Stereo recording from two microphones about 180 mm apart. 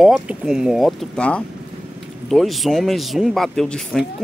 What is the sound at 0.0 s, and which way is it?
A man's voice, centre (ahead or behind).